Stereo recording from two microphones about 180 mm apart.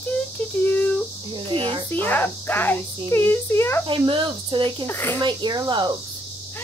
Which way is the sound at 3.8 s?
30° right (ahead or behind).